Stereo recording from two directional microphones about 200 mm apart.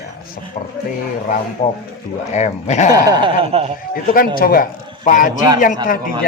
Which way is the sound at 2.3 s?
35° left (ahead or behind).